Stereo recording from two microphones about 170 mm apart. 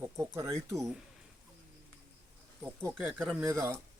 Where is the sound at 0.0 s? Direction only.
15° right (ahead or behind).